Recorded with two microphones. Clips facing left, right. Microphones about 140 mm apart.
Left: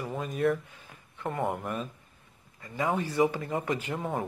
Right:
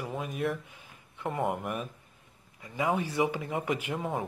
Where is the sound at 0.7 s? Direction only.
15° right (ahead or behind).